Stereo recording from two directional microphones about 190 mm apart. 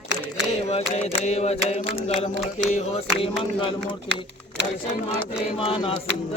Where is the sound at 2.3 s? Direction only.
65° right (ahead or behind).